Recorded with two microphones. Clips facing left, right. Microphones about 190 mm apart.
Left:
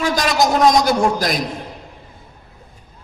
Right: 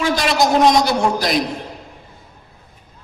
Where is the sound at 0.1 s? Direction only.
45° left (ahead or behind).